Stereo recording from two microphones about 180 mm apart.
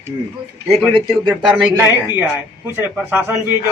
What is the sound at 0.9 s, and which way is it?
Speech, 25° right (ahead or behind).